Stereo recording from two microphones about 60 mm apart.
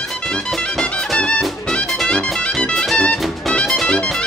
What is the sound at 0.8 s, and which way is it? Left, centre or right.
Music, centre.